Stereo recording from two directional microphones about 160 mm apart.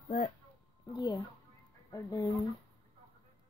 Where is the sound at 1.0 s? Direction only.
30° left (ahead or behind).